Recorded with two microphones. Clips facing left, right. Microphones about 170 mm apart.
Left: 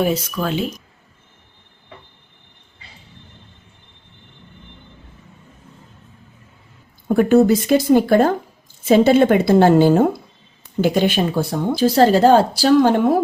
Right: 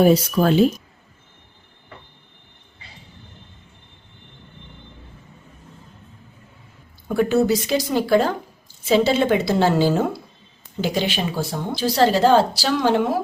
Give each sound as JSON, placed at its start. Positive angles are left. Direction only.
{"t": 0.0, "sound": "speech", "side_deg": -35}
{"t": 7.1, "sound": "speech", "side_deg": 50}